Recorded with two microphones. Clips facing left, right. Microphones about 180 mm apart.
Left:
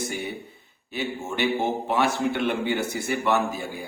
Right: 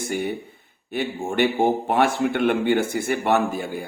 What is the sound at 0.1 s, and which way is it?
A man's voice, 50° right (ahead or behind).